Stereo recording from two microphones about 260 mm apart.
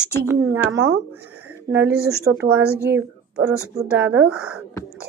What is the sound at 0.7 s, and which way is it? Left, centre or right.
Speech, right.